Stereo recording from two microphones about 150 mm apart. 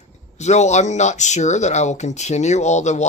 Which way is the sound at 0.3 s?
50° left (ahead or behind).